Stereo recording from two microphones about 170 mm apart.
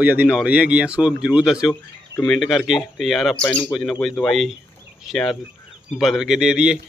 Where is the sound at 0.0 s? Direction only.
10° right (ahead or behind).